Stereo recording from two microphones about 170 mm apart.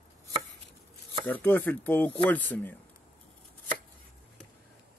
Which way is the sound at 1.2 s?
10° left (ahead or behind).